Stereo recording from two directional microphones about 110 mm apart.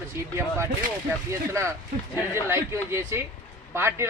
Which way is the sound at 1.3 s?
25° right (ahead or behind).